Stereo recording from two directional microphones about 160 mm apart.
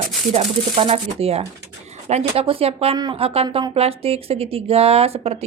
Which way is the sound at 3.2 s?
35° right (ahead or behind).